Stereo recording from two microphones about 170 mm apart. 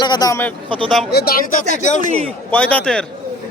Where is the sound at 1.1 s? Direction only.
65° left (ahead or behind).